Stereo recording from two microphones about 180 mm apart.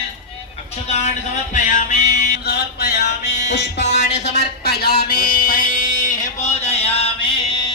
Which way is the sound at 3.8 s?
40° left (ahead or behind).